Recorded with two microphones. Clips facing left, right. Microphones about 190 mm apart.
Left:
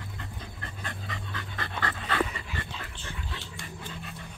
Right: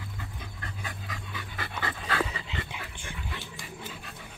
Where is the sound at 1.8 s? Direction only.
5° right (ahead or behind).